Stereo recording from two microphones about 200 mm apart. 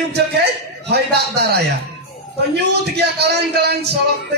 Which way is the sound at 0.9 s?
55° right (ahead or behind).